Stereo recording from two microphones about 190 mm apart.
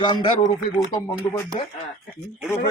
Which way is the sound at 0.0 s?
25° left (ahead or behind).